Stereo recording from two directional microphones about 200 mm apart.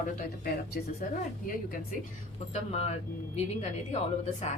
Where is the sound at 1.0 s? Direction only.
45° left (ahead or behind).